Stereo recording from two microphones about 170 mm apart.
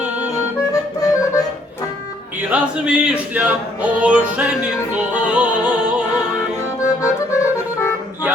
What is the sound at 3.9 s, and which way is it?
Music, 10° right (ahead or behind).